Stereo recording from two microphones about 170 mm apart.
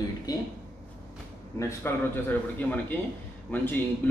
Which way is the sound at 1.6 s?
15° left (ahead or behind).